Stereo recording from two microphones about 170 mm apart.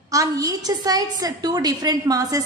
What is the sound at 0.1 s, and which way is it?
A woman's voice, 20° right (ahead or behind).